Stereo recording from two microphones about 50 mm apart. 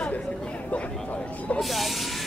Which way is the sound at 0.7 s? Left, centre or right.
Left.